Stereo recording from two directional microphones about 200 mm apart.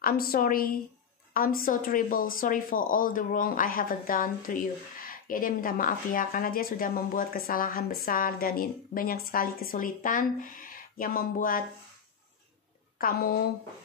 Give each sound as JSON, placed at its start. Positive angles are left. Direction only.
{"t": 0.0, "sound": "a woman's voice", "side_deg": 45}
{"t": 13.0, "sound": "a woman's voice", "side_deg": 50}